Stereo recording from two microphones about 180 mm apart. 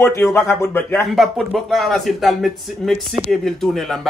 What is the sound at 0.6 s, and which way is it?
Speech, 15° left (ahead or behind).